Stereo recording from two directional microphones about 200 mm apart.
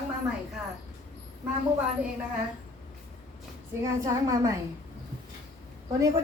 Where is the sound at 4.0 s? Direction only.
15° right (ahead or behind).